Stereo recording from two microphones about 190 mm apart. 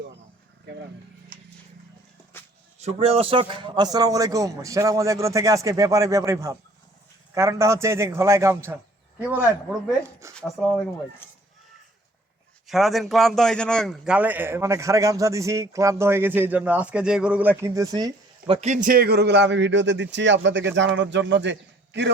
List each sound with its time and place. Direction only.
2.3 s a sound: 10° left (ahead or behind)
2.7 s a man's voice: 35° right (ahead or behind); by 10.3 s 15° right (ahead or behind)
10.6 s speech: centre (ahead or behind)
12.6 s a man's voice: centre (ahead or behind); by 22.1 s 65° right (ahead or behind)